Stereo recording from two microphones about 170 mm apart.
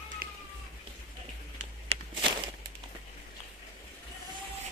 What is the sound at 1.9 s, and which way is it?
Walk, 30° right (ahead or behind).